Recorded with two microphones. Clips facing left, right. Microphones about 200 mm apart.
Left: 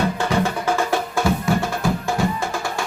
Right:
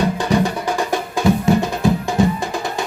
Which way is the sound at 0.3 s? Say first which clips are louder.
Right 2 dB; 15° right (ahead or behind).